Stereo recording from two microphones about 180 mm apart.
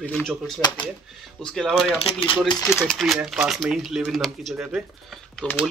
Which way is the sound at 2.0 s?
30° left (ahead or behind).